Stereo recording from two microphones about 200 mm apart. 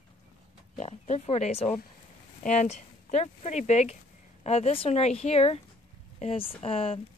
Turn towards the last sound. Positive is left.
turn(degrees=30)  # may be behind; listen again after turning